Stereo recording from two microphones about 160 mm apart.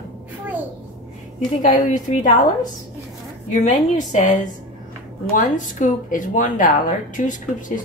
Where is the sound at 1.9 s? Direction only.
50° left (ahead or behind).